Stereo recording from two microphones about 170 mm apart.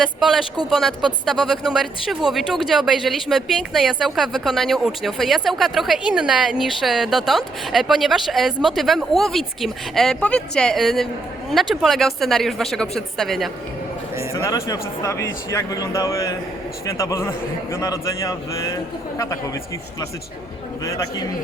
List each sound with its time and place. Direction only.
0.0 s speech: centre (ahead or behind)
14.3 s a man's voice: 20° left (ahead or behind)
20.8 s a man's voice: 20° left (ahead or behind)